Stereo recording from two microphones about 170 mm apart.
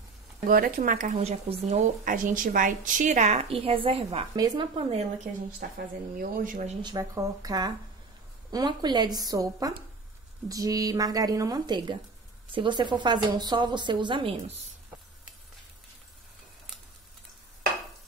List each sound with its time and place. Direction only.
0.5 s speech: 55° right (ahead or behind); by 4.3 s 35° right (ahead or behind)
4.4 s a woman's voice: 25° right (ahead or behind)
5.6 s speech: 60° right (ahead or behind)
6.8 s a woman's voice: 20° right (ahead or behind)